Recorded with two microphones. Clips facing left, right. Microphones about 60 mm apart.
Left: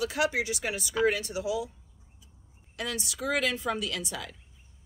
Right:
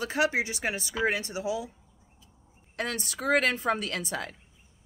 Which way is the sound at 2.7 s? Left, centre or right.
Right.